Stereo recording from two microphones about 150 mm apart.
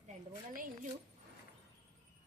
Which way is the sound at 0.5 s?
65° right (ahead or behind).